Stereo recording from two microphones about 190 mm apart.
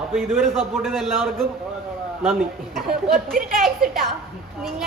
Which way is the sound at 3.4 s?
45° right (ahead or behind).